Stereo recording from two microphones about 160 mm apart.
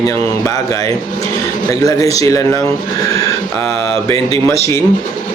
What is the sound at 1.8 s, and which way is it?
Speech, 20° left (ahead or behind).